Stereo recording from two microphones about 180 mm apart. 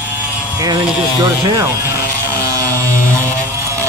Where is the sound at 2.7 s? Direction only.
15° right (ahead or behind).